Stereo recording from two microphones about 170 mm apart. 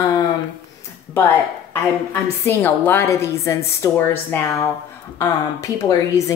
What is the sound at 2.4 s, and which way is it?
Speech, 10° left (ahead or behind).